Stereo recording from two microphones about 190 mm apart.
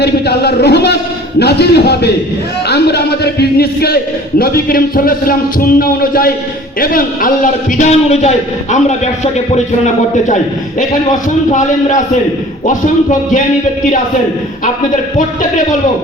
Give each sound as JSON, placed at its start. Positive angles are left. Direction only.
{"t": 0.0, "sound": "a man's voice", "side_deg": 60}